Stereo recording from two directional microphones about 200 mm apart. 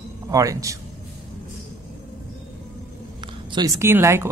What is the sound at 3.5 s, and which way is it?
Speech, 15° right (ahead or behind).